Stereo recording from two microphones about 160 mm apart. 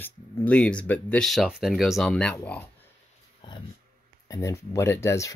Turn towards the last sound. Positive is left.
turn(degrees=20)  # may be behind; listen again after turning